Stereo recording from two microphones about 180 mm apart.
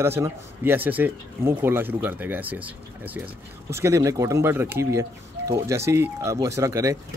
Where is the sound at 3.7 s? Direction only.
15° right (ahead or behind).